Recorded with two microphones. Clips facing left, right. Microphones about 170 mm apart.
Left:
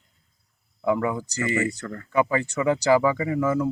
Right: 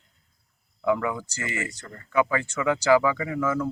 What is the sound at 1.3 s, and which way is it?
Speech, 40° left (ahead or behind).